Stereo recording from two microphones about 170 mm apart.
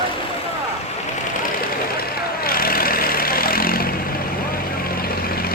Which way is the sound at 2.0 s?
60° left (ahead or behind).